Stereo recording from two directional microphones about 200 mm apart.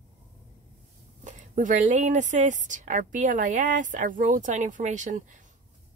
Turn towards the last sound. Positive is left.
turn(degrees=-40)  # may be behind; listen again after turning